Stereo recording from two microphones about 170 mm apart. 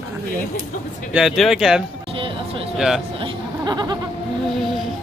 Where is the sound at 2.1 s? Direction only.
30° right (ahead or behind).